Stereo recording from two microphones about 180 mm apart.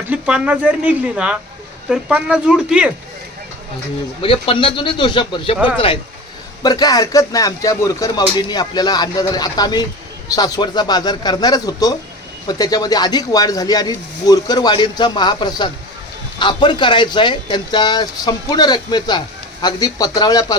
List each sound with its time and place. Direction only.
0.1 s speech: 5° right (ahead or behind)
4.2 s speech: 30° left (ahead or behind)
6.6 s speech: 20° left (ahead or behind)